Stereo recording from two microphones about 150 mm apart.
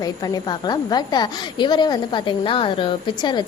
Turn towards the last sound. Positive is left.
turn(degrees=30)  # may be behind; listen again after turning